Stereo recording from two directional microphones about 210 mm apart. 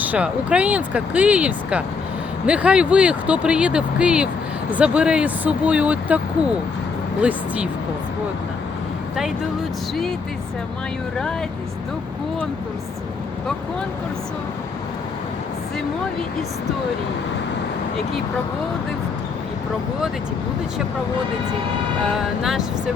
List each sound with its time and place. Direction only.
0.0 s speech: 5° right (ahead or behind)
22.2 s speech: centre (ahead or behind)